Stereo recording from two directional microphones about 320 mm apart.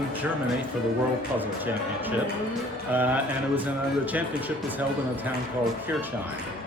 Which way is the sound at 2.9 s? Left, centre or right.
Centre.